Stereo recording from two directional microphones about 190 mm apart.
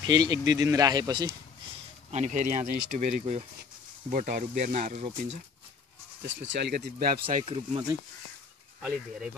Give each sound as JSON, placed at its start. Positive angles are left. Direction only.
{"t": 0.0, "sound": "speech", "side_deg": -20}
{"t": 2.0, "sound": "speech", "side_deg": -40}
{"t": 6.2, "sound": "speech", "side_deg": -70}
{"t": 7.4, "sound": "speech", "side_deg": -30}
{"t": 8.8, "sound": "speech", "side_deg": -5}